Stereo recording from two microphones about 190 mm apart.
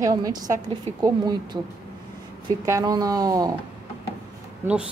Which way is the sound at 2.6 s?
15° right (ahead or behind).